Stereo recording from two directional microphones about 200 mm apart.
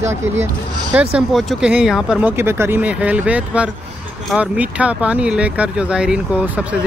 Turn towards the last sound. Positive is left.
turn(degrees=-5)  # may be behind; listen again after turning